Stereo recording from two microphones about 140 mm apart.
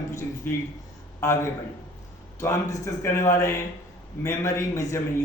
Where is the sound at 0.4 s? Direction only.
15° left (ahead or behind).